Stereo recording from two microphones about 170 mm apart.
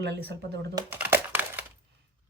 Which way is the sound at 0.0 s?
85° right.